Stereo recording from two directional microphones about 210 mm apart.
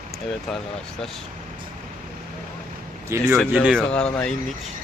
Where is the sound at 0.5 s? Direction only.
5° left (ahead or behind).